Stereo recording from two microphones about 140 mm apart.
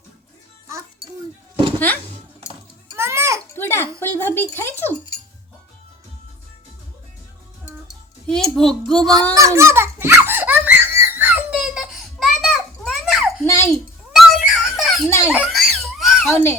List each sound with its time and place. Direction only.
2.9 s a sound: 20° right (ahead or behind)
3.5 s a sound: 15° left (ahead or behind)
4.0 s speech: 15° left (ahead or behind)
7.9 s a child's voice: 5° left (ahead or behind)
9.3 s giggle: 20° right (ahead or behind); by 13.3 s centre (ahead or behind)
13.4 s a sound: 20° left (ahead or behind)
14.1 s music: 5° right (ahead or behind)
15.3 s giggle: centre (ahead or behind)
16.3 s speech: 20° left (ahead or behind)